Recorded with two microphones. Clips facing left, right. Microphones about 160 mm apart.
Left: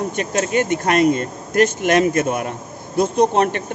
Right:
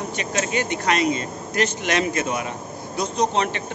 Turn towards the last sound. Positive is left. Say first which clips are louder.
# left 6 dB
turn(degrees=50)  # may be behind; listen again after turning